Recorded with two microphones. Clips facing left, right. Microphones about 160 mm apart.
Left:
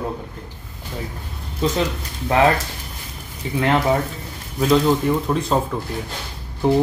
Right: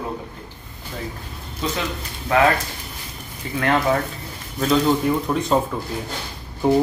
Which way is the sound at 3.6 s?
20° left (ahead or behind).